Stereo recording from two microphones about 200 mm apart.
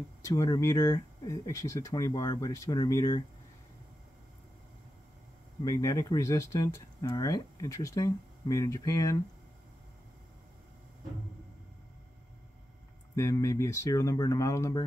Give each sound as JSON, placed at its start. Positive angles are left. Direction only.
{"t": 0.2, "sound": "speech", "side_deg": 15}
{"t": 5.6, "sound": "speech", "side_deg": 15}
{"t": 13.1, "sound": "speech", "side_deg": 15}